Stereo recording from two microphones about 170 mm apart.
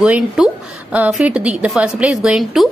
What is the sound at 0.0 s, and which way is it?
A woman's voice, 5° right (ahead or behind).